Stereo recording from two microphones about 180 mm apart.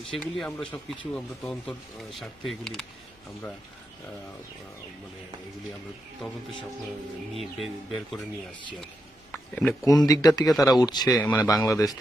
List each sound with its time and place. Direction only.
0.0 s speech: centre (ahead or behind)
6.2 s speech: centre (ahead or behind)
9.3 s a sound: 10° left (ahead or behind)
9.8 s speech: 20° left (ahead or behind)